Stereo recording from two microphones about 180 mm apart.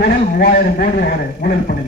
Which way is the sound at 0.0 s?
60° left (ahead or behind).